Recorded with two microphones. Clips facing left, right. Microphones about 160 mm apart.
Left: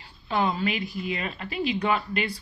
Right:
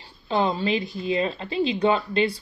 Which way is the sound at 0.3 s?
30° right (ahead or behind).